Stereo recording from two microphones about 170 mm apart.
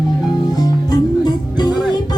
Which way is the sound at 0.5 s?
20° left (ahead or behind).